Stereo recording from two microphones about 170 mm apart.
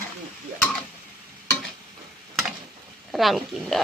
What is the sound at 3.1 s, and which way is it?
Speech, centre (ahead or behind).